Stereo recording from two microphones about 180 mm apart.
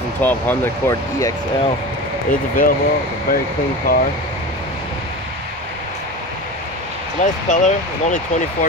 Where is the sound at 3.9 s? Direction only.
55° left (ahead or behind).